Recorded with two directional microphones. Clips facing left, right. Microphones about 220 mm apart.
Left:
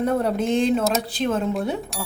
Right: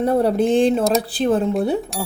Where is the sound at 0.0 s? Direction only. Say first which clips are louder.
Right 5 dB; 35° right (ahead or behind).